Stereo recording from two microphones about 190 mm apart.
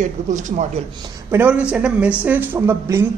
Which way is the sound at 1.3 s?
5° right (ahead or behind).